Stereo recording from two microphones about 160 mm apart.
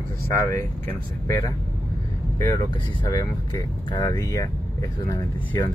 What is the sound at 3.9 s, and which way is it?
Speech, 25° left (ahead or behind).